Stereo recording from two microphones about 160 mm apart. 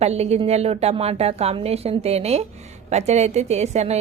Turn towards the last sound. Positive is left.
turn(degrees=-45)  # may be behind; listen again after turning